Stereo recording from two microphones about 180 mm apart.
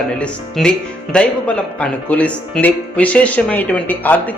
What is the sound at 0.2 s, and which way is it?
Speech, 5° left (ahead or behind).